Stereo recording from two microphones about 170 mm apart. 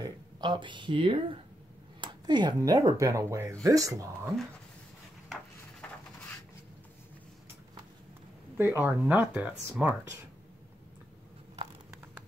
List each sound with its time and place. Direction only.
0.0 s speech: 25° right (ahead or behind)
5.8 s a sound: 5° left (ahead or behind)
8.5 s speech: 15° right (ahead or behind)